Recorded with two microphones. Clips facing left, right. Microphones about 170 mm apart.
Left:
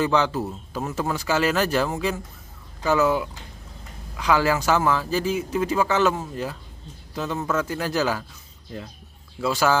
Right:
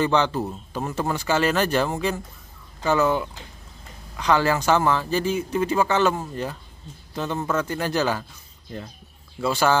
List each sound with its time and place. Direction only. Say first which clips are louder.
0.0 s speech: even; 5° left (ahead or behind)
9.4 s speech: right 1 dB; centre (ahead or behind)